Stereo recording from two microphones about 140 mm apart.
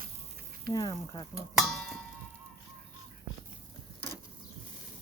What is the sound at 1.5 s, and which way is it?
Music, centre (ahead or behind).